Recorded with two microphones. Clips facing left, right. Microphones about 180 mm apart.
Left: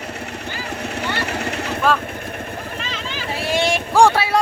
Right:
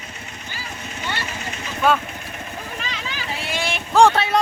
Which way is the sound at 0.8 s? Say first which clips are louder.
Left 5 dB; 65° left (ahead or behind).